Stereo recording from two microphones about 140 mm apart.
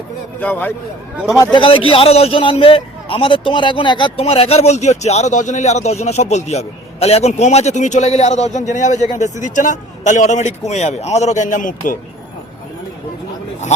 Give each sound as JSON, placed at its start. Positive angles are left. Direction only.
{"t": 0.3, "sound": "a man's voice", "side_deg": 15}
{"t": 1.4, "sound": "a man's voice", "side_deg": 35}